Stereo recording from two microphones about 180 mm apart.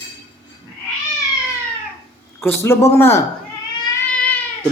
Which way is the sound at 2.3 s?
15° left (ahead or behind).